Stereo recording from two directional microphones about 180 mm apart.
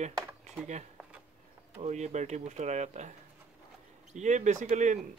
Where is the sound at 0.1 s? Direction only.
10° right (ahead or behind).